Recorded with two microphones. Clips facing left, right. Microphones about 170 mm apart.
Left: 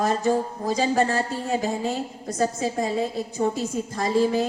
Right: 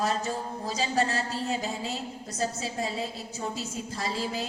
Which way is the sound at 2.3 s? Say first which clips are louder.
Left 8 dB; 50° left (ahead or behind).